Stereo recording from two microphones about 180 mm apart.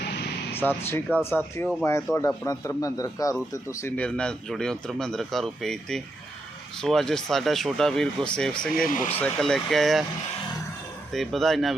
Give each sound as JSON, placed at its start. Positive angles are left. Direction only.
{"t": 0.5, "sound": "speech", "side_deg": 10}
{"t": 11.1, "sound": "speech", "side_deg": 0}